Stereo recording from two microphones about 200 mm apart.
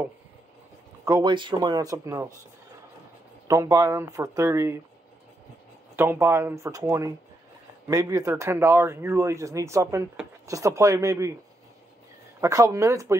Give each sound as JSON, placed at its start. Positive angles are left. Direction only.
{"t": 1.0, "sound": "speech", "side_deg": -20}
{"t": 3.4, "sound": "speech", "side_deg": -15}
{"t": 5.9, "sound": "speech", "side_deg": -10}
{"t": 12.4, "sound": "speech", "side_deg": -15}